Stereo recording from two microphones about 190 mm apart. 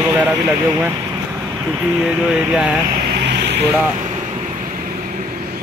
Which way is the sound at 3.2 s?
65° right (ahead or behind).